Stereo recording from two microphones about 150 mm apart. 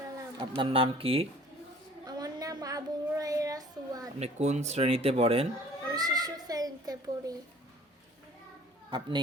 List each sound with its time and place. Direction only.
0.5 s speech: 35° right (ahead or behind)
2.0 s child singing: 25° right (ahead or behind)
4.2 s speech: 50° right (ahead or behind)
5.9 s a sound: 25° right (ahead or behind)
8.9 s speech: 30° right (ahead or behind)